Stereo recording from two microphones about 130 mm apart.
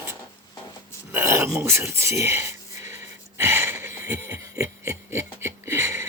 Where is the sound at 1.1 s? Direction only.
20° right (ahead or behind).